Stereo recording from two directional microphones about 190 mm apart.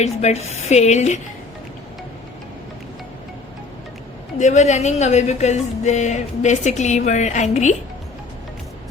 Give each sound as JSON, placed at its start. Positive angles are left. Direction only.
{"t": 0.0, "sound": "speech", "side_deg": 35}
{"t": 4.4, "sound": "speech", "side_deg": 40}